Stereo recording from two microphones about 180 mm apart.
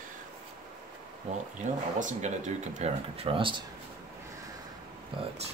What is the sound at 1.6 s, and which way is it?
Speech, 40° right (ahead or behind).